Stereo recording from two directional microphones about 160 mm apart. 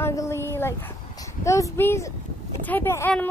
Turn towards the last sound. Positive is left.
turn(degrees=15)  # may be behind; listen again after turning